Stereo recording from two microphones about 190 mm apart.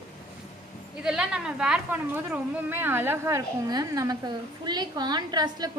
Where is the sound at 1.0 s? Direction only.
5° right (ahead or behind); by 5.7 s 20° right (ahead or behind).